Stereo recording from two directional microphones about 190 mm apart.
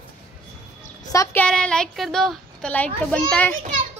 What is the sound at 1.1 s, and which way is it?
A woman's voice, 15° left (ahead or behind).